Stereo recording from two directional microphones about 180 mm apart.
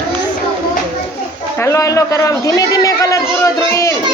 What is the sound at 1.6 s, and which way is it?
A man's voice, 15° left (ahead or behind).